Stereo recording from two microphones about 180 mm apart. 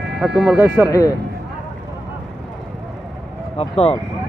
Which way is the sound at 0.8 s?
15° left (ahead or behind).